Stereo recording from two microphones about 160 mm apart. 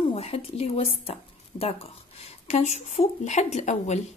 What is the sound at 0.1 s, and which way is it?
Speech, 40° left (ahead or behind).